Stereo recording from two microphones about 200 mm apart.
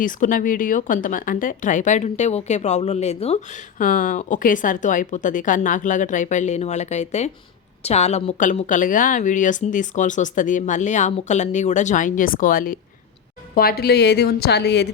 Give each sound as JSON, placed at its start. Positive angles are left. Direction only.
{"t": 0.0, "sound": "a woman's voice", "side_deg": 45}